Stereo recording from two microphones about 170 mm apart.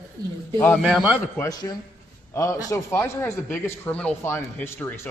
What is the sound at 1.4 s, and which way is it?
A man's voice, 25° left (ahead or behind).